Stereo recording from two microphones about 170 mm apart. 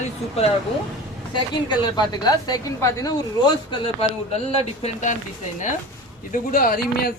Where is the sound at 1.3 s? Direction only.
25° left (ahead or behind).